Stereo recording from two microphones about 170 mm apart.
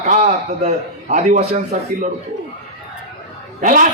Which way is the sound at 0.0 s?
40° right (ahead or behind).